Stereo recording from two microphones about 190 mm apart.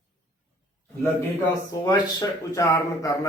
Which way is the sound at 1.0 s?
15° left (ahead or behind).